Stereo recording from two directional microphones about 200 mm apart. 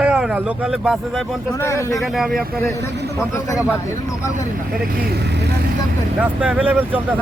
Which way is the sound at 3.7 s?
15° left (ahead or behind).